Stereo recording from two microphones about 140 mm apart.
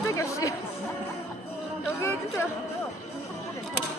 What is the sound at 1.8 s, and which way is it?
Speech, 15° left (ahead or behind).